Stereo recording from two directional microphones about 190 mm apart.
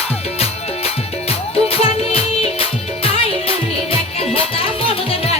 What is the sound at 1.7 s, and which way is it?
Music, 30° left (ahead or behind).